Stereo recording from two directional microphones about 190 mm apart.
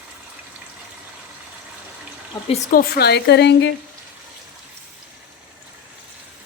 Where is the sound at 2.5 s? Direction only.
40° left (ahead or behind).